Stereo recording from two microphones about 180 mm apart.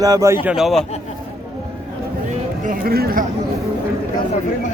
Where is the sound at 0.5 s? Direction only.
Centre (ahead or behind).